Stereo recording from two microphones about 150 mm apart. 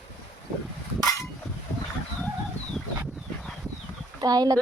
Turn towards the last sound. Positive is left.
turn(degrees=-25)  # may be behind; listen again after turning